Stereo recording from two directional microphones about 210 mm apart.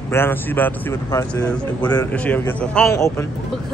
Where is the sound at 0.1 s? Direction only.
10° left (ahead or behind).